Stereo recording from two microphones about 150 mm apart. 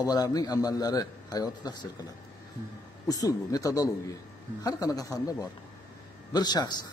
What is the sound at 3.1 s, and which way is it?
A man's voice, 25° left (ahead or behind).